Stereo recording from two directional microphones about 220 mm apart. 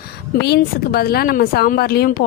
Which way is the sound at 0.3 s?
50° left (ahead or behind).